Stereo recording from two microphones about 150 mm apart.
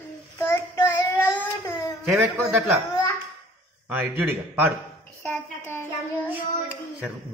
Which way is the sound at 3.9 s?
15° right (ahead or behind).